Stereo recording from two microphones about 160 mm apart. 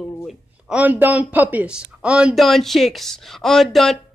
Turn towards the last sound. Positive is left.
turn(degrees=0)  # may be behind; listen again after turning